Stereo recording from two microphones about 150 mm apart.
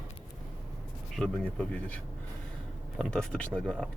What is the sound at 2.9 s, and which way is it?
Speech, 5° left (ahead or behind).